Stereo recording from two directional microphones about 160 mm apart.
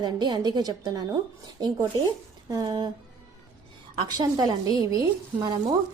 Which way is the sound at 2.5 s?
25° right (ahead or behind).